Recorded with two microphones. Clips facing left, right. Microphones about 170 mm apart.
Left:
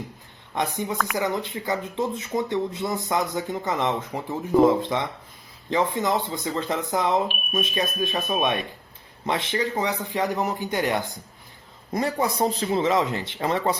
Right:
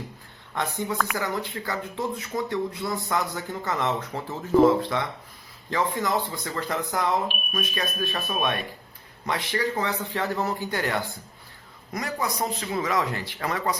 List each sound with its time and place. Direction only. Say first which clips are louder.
0.5 s a man's voice: left 1 dB; 15° left (ahead or behind)
11.9 s speech: left 5 dB; 30° left (ahead or behind)